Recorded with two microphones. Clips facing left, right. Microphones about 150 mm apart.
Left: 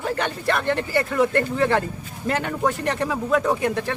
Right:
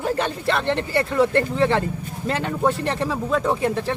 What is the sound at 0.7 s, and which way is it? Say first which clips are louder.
Speech: right 1 dB; centre (ahead or behind).